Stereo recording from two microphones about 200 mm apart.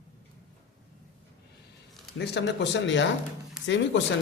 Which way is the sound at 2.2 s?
60° left (ahead or behind).